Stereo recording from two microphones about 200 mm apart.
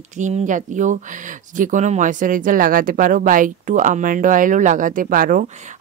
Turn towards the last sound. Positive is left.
turn(degrees=-45)  # may be behind; listen again after turning